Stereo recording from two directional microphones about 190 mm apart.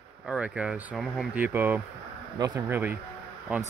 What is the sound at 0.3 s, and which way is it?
Speech, 5° right (ahead or behind).